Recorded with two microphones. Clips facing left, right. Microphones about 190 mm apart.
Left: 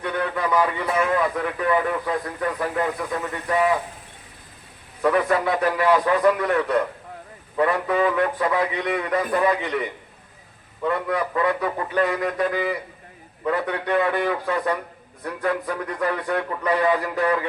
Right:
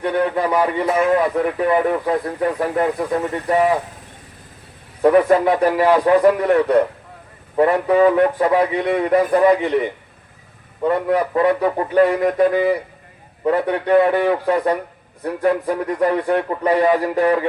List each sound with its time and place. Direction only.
0.0 s a man's voice: 35° right (ahead or behind)
5.0 s a man's voice: 35° right (ahead or behind)
10.8 s a man's voice: 35° right (ahead or behind)